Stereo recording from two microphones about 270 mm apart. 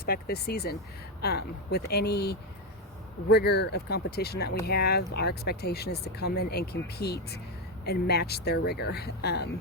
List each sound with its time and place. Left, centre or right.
0.0 s speech: left